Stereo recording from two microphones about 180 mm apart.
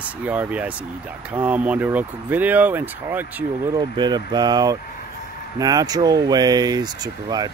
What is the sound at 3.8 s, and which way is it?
Speech, 25° right (ahead or behind).